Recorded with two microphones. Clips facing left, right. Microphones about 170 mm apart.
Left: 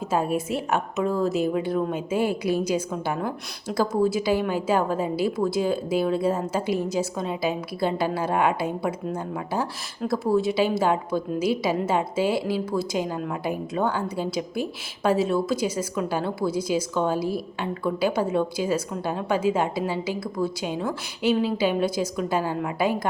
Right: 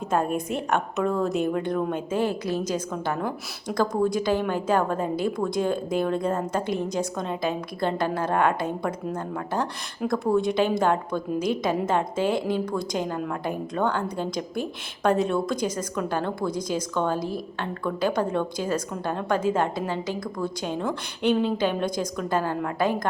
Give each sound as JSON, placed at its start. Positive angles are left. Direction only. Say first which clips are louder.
{"t": 0.1, "sound": "a woman's voice", "louder": "even", "side_deg": 5}